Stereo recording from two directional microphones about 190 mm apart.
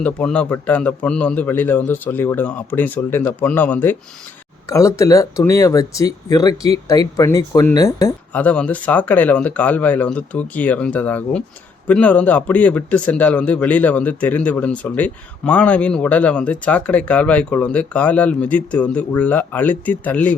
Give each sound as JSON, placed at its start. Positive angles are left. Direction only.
{"t": 0.0, "sound": "speech", "side_deg": 5}
{"t": 8.3, "sound": "speech", "side_deg": 5}